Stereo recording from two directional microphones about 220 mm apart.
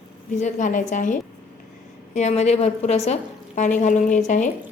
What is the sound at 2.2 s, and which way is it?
A woman's voice, 30° left (ahead or behind).